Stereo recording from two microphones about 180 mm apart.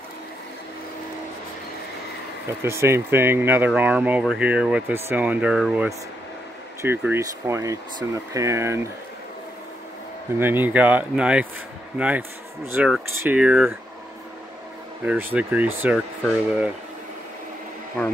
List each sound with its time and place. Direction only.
2.6 s speech: 15° right (ahead or behind)
10.4 s speech: 10° right (ahead or behind)
15.0 s speech: 10° right (ahead or behind)
18.0 s speech: 5° left (ahead or behind)